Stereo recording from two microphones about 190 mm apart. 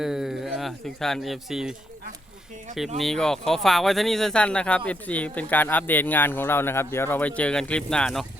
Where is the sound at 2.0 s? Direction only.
45° right (ahead or behind).